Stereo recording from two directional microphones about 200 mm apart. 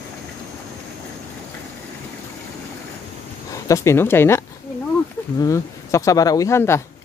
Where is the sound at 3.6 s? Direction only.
15° left (ahead or behind).